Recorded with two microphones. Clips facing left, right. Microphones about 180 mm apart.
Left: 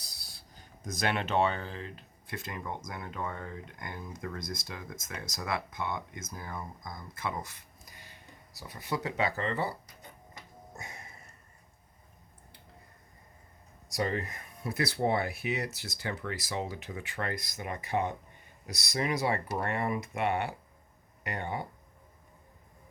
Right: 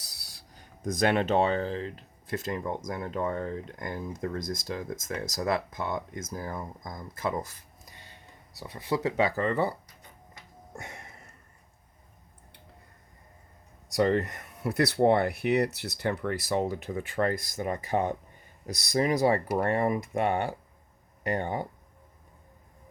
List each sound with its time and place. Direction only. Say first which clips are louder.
0.1 s a sound: right 1 dB; 80° right
1.0 s speech: right 5 dB; 40° right (ahead or behind)
13.9 s speech: right 8 dB; 65° right (ahead or behind)
16.9 s speech: right 8 dB; 40° right (ahead or behind)